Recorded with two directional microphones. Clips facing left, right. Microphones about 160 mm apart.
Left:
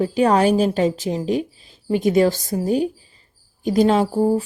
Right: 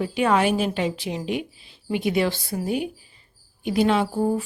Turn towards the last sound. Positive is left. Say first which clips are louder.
# left 4 dB
turn(degrees=35)  # may be behind; listen again after turning